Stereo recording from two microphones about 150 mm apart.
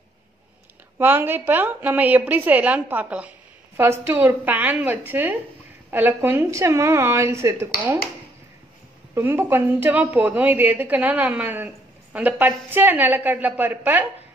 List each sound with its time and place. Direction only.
0.9 s a woman's voice: 15° right (ahead or behind)
9.1 s a woman's voice: 15° right (ahead or behind)